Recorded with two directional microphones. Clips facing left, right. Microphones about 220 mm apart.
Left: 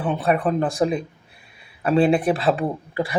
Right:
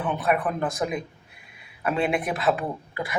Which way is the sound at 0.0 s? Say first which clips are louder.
Left 4 dB; 30° left (ahead or behind).